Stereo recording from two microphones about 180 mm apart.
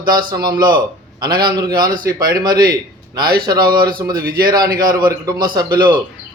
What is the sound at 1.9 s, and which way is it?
Speech, 50° right (ahead or behind).